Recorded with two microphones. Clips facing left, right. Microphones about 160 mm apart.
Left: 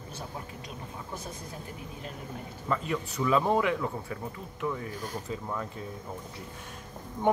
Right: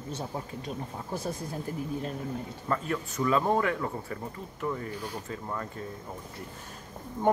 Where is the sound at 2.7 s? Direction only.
5° left (ahead or behind).